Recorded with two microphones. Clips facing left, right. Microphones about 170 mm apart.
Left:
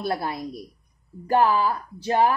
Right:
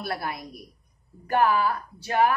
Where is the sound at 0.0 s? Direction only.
25° left (ahead or behind).